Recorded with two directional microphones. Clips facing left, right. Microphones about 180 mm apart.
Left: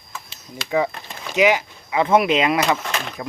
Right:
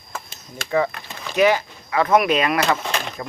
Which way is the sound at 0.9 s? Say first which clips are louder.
Left 1 dB; 20° left (ahead or behind).